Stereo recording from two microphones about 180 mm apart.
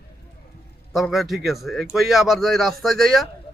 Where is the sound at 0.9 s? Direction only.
Centre (ahead or behind).